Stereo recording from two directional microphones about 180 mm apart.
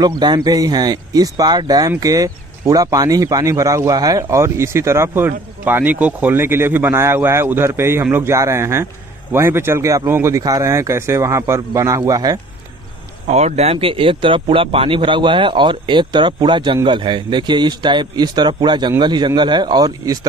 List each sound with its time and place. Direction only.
0.0 s speech: 25° right (ahead or behind)
13.3 s speech: 40° right (ahead or behind); by 20.2 s 20° right (ahead or behind)